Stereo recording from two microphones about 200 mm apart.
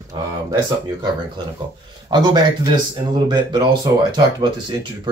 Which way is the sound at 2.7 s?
20° right (ahead or behind).